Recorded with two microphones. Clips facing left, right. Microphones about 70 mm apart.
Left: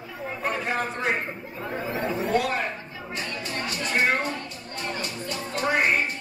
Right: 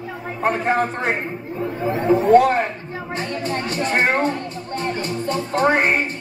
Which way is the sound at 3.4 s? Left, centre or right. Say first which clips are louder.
Right 9 dB; right.